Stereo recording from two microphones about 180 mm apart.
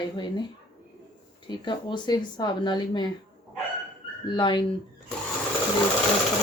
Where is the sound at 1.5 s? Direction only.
25° left (ahead or behind).